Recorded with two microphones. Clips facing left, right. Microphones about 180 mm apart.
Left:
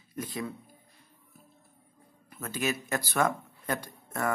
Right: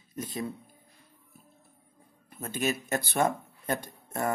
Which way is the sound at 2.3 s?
30° right (ahead or behind).